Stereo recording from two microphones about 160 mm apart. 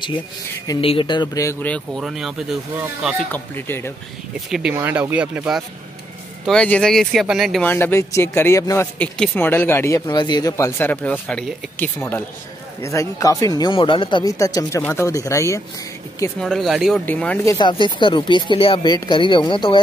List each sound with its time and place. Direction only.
0.7 s speech: 35° left (ahead or behind); by 1.8 s 15° left (ahead or behind)
2.0 s speech: centre (ahead or behind)
3.3 s speech: 10° left (ahead or behind)
4.5 s speech: 5° right (ahead or behind)
6.4 s speech: 5° left (ahead or behind)
7.6 s speech: 15° left (ahead or behind)
12.8 s speech: 20° left (ahead or behind)
16.3 s speech: centre (ahead or behind)
17.0 s speech: 10° left (ahead or behind)
17.5 s speech: 30° left (ahead or behind)